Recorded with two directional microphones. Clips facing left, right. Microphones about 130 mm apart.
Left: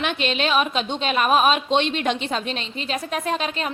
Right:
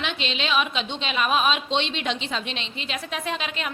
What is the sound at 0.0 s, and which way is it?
A woman's voice, 50° left (ahead or behind).